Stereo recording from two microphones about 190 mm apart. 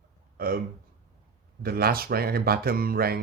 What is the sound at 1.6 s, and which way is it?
Speech, 55° right (ahead or behind).